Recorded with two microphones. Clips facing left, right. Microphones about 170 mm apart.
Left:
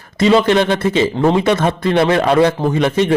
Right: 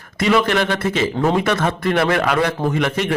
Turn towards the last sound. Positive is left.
turn(degrees=25)  # may be behind; listen again after turning